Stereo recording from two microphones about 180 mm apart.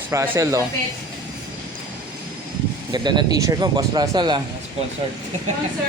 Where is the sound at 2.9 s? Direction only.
25° right (ahead or behind).